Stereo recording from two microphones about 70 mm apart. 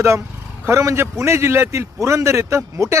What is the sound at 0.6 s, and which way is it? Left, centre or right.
A man's voice, right.